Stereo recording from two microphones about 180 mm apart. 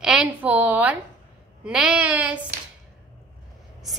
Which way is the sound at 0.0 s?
5° right (ahead or behind).